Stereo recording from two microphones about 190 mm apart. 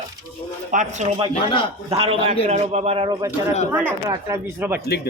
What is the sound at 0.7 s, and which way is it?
A man's voice, 40° right (ahead or behind).